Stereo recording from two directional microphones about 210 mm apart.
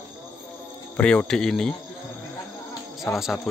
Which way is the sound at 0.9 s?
5° left (ahead or behind).